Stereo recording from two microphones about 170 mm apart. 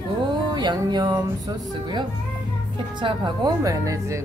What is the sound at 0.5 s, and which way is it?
Speech, 25° right (ahead or behind).